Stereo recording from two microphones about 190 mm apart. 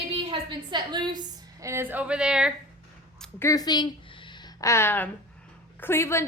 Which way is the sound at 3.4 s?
20° left (ahead or behind).